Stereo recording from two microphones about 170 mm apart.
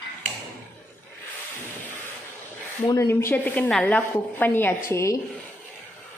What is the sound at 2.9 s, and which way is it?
A woman's voice, 15° left (ahead or behind).